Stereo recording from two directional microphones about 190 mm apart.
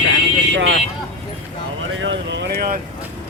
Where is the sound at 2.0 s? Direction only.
65° right (ahead or behind); by 2.8 s 50° right (ahead or behind).